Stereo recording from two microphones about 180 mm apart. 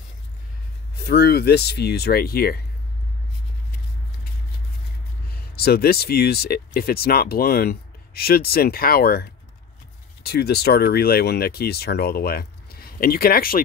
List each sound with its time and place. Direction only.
0.9 s speech: 65° left (ahead or behind)
5.3 s speech: 60° left (ahead or behind)